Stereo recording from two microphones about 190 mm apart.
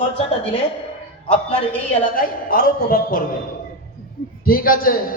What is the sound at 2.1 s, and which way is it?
A man's voice, 45° left (ahead or behind).